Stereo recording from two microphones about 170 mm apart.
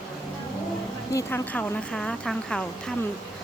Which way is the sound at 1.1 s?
10° left (ahead or behind).